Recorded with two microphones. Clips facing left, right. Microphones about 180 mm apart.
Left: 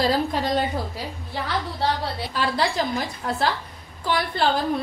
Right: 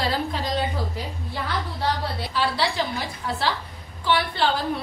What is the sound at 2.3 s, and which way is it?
A woman's voice, 45° left (ahead or behind).